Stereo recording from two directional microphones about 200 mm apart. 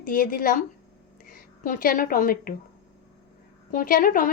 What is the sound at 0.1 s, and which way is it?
A woman's voice, 45° left (ahead or behind).